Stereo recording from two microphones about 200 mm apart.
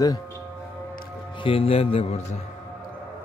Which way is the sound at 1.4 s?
25° left (ahead or behind).